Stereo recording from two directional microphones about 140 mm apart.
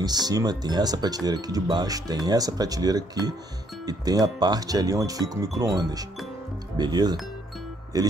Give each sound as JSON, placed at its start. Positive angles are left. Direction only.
{"t": 0.0, "sound": "speech", "side_deg": -30}